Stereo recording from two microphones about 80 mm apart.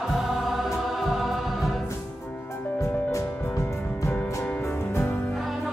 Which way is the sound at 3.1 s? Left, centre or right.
Left.